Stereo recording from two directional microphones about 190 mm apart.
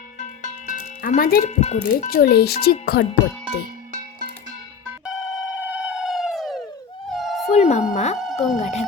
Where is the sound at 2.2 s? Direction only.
55° left (ahead or behind).